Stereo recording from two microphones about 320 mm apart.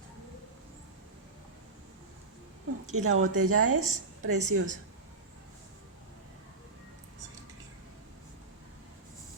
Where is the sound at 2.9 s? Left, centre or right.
Right.